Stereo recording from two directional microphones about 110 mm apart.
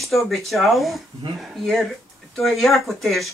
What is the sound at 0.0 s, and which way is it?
Speech, centre (ahead or behind).